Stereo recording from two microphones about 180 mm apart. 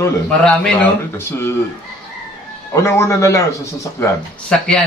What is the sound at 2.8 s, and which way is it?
Speech, 15° left (ahead or behind).